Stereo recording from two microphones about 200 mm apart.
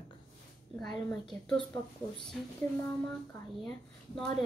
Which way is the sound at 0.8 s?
Centre (ahead or behind).